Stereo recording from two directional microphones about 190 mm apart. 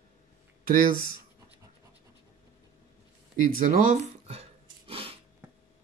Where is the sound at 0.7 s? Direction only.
50° right (ahead or behind).